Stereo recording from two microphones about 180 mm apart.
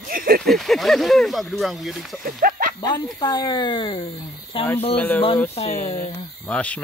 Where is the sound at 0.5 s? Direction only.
Centre (ahead or behind).